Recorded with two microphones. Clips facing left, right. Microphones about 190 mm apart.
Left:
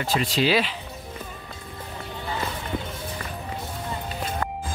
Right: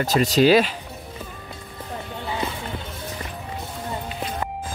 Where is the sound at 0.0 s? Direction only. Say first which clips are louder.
Right 6 dB; 40° right (ahead or behind).